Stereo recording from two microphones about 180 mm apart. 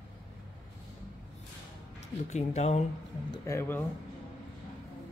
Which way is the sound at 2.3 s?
40° left (ahead or behind).